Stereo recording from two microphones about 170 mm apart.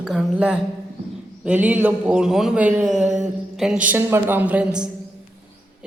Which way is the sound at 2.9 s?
45° right (ahead or behind).